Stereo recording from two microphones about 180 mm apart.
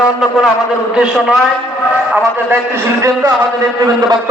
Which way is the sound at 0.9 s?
5° right (ahead or behind).